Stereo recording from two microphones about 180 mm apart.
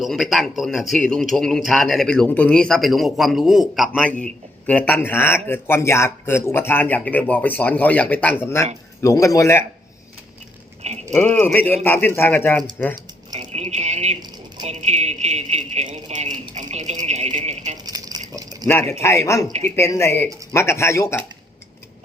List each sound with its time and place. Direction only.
0.0 s a man's voice: centre (ahead or behind); by 9.6 s 15° left (ahead or behind)
10.8 s speech: 40° right (ahead or behind)
11.3 s speech: 10° left (ahead or behind)
13.3 s speech: 40° right (ahead or behind)
17.8 s a sound: 20° right (ahead or behind)
19.0 s speech: 15° left (ahead or behind)